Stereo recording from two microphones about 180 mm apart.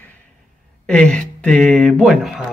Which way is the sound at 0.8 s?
5° left (ahead or behind).